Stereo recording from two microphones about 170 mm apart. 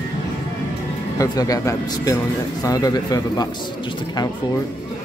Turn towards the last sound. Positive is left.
turn(degrees=20)  # may be behind; listen again after turning